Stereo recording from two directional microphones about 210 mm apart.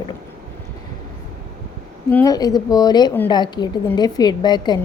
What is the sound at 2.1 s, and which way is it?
A woman's voice, 10° left (ahead or behind).